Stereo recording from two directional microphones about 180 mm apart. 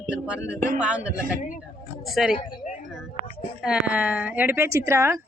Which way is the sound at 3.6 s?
5° right (ahead or behind).